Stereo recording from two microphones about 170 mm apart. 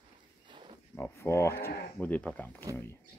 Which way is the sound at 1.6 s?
65° left (ahead or behind).